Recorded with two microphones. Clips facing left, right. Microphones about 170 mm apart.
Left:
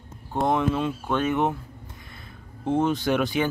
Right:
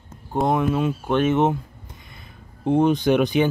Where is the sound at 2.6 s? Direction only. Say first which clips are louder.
Right 5 dB; 15° right (ahead or behind).